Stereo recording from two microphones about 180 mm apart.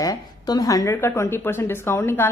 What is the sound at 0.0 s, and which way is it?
A woman's voice, 20° left (ahead or behind).